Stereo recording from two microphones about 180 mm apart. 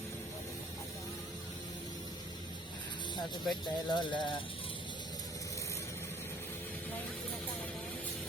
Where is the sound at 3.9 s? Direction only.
25° left (ahead or behind).